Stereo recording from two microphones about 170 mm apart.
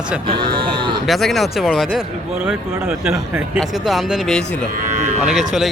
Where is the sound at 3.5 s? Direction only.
Centre (ahead or behind).